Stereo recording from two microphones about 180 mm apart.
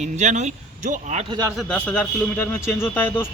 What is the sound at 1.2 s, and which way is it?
Speech, 25° right (ahead or behind).